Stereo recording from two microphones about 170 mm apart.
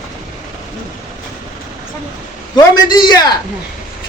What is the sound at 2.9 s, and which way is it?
Speech, 25° left (ahead or behind).